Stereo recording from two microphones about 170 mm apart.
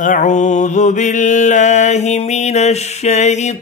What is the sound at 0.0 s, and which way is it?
Mantra, 45° left (ahead or behind).